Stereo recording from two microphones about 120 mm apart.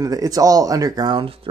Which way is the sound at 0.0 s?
30° right (ahead or behind).